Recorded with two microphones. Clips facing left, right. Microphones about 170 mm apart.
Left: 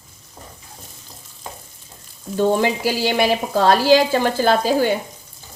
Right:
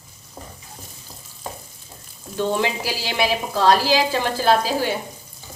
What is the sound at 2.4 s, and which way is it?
Sizzle, 50° left (ahead or behind).